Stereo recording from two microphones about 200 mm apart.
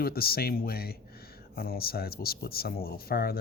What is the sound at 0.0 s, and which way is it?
Speech, 50° left (ahead or behind).